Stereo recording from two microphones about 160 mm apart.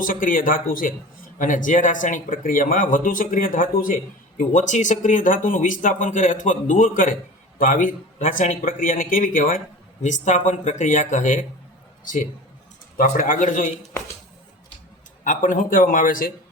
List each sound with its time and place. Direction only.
0.0 s speech: 60° left (ahead or behind)
15.2 s speech: 55° left (ahead or behind)